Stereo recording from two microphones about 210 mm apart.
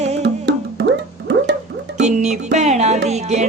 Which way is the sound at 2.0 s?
35° right (ahead or behind).